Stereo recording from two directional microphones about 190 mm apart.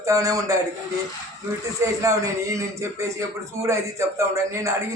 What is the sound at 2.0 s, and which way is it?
Speech, 15° right (ahead or behind).